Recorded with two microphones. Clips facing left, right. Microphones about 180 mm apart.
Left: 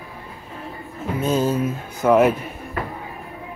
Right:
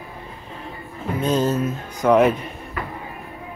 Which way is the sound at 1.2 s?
10° left (ahead or behind).